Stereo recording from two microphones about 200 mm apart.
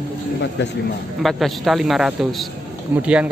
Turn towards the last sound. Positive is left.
turn(degrees=-5)  # may be behind; listen again after turning